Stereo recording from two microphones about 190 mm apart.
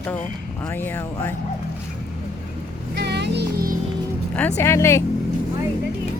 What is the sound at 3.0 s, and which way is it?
Music, 60° right (ahead or behind).